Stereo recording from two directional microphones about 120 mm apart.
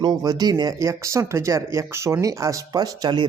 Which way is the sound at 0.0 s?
35° right (ahead or behind).